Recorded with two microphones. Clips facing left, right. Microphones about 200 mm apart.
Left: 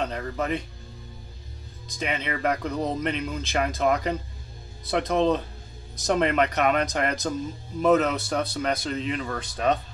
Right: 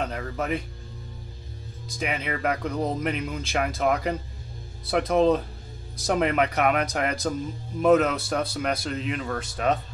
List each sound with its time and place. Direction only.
0.0 s speech: 5° right (ahead or behind)
2.0 s speech: 5° right (ahead or behind)